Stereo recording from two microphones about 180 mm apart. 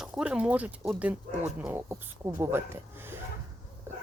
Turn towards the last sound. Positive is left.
turn(degrees=-15)  # may be behind; listen again after turning